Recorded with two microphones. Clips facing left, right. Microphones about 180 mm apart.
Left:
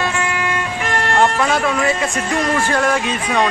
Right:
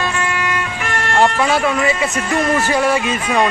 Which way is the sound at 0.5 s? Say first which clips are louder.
Left 1 dB; 35° left (ahead or behind).